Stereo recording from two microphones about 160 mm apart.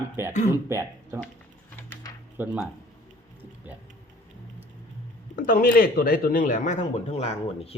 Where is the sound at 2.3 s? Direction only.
10° right (ahead or behind).